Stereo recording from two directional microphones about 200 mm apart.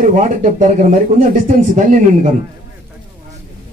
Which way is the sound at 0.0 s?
40° right (ahead or behind).